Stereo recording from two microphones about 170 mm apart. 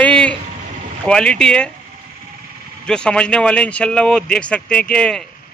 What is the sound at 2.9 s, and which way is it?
A man's voice, 5° left (ahead or behind).